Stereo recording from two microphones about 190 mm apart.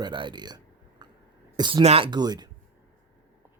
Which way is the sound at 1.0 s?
20° right (ahead or behind).